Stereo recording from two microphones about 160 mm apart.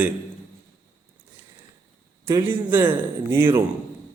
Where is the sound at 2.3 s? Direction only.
15° right (ahead or behind).